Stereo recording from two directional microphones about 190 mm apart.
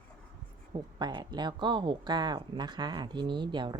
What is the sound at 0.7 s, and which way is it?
A woman's voice, 25° right (ahead or behind).